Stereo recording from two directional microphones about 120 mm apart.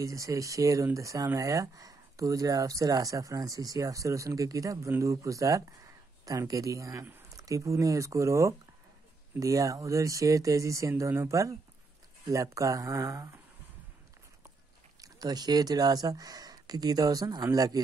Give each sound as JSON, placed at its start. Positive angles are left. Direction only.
{"t": 0.0, "sound": "speech", "side_deg": -25}
{"t": 15.0, "sound": "speech", "side_deg": -35}